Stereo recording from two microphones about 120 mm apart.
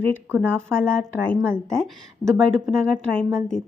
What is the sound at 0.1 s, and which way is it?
Speech, 15° right (ahead or behind).